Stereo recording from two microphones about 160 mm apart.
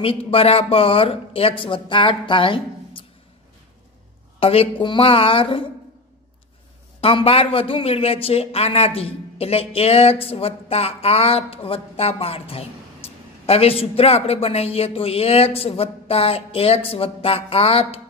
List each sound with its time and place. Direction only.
0.0 s a man's voice: 35° left (ahead or behind)
4.4 s a man's voice: 35° left (ahead or behind)
7.0 s a man's voice: 35° left (ahead or behind)